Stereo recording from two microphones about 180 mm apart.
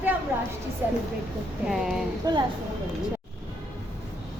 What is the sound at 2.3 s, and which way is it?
Speech, 20° right (ahead or behind).